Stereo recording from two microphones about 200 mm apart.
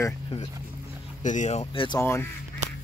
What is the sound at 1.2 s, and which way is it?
Speech, 40° left (ahead or behind).